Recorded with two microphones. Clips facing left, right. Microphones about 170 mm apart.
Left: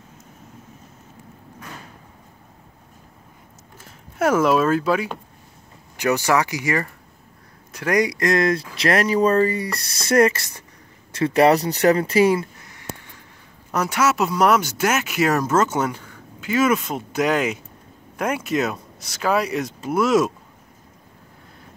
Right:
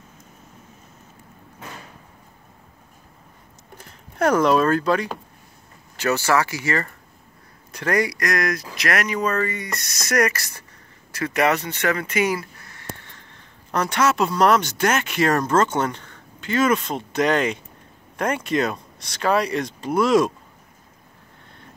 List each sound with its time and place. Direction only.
4.2 s speech: 5° left (ahead or behind)
5.9 s speech: 15° left (ahead or behind)